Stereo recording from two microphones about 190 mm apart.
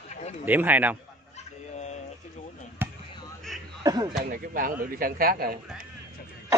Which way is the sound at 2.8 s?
10° right (ahead or behind).